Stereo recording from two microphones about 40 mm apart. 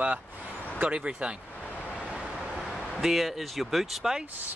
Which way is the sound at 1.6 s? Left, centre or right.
Left.